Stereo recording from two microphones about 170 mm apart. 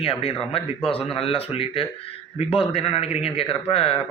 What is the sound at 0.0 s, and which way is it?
A man's voice, 35° left (ahead or behind).